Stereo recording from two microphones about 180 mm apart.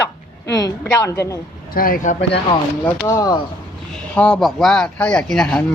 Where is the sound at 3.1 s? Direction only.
20° left (ahead or behind).